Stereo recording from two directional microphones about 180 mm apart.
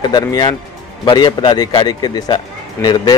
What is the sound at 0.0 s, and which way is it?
A man's voice, 20° left (ahead or behind).